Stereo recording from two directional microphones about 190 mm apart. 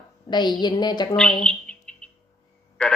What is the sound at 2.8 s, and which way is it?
Speech, 5° left (ahead or behind).